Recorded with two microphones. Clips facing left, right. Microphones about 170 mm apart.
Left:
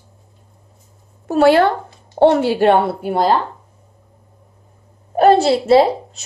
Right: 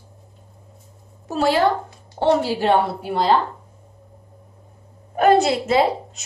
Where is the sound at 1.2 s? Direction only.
60° left (ahead or behind).